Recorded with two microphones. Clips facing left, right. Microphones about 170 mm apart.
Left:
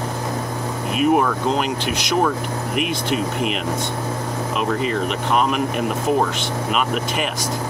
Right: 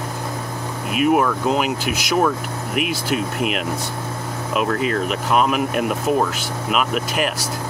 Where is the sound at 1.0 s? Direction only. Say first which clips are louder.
Even; 5° right (ahead or behind).